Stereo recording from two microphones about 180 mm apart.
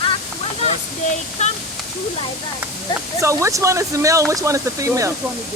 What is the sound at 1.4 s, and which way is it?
Speech, 40° left (ahead or behind).